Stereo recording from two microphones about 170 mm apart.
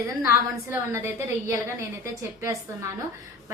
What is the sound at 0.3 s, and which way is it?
A woman's voice, 15° right (ahead or behind).